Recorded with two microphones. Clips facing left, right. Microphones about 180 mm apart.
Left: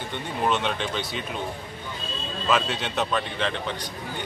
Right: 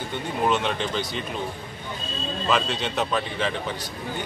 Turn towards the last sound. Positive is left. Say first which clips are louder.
# right 1 dB
turn(degrees=0)  # may be behind; listen again after turning